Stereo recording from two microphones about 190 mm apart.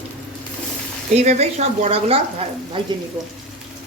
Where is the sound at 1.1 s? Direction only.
35° right (ahead or behind).